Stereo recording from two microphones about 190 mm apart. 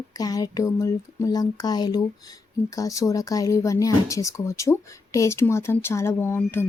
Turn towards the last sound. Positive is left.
turn(degrees=10)  # may be behind; listen again after turning